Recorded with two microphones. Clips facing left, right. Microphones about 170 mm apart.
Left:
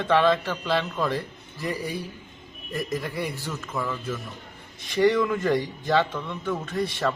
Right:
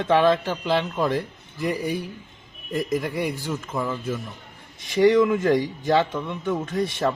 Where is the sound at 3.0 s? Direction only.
15° right (ahead or behind).